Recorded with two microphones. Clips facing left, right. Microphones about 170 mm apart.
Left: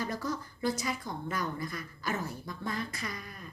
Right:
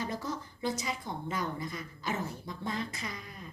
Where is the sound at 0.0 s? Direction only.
25° right (ahead or behind).